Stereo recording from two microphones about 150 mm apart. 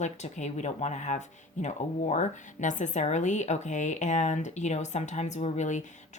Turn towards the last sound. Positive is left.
turn(degrees=50)  # may be behind; listen again after turning